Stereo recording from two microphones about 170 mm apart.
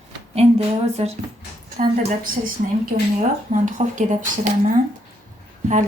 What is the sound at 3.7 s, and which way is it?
Speech, 45° right (ahead or behind).